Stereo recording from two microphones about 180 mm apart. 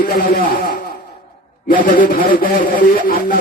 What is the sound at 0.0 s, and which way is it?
Speech, 50° left (ahead or behind).